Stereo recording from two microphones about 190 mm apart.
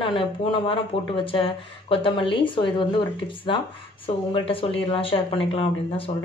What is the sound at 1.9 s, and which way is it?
Speech, 25° left (ahead or behind).